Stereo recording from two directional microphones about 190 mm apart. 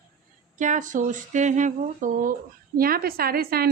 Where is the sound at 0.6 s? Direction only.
40° right (ahead or behind).